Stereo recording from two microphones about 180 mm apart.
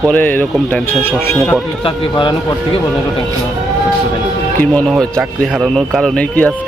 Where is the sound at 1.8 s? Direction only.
25° left (ahead or behind).